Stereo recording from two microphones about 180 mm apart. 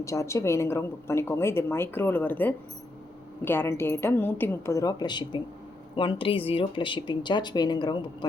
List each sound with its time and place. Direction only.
0.0 s a woman's voice: 15° left (ahead or behind)